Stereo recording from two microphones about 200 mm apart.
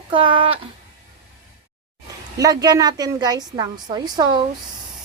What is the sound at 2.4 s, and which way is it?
A woman's voice, 20° right (ahead or behind).